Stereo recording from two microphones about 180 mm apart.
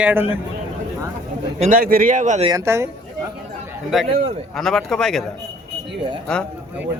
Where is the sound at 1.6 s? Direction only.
50° right (ahead or behind).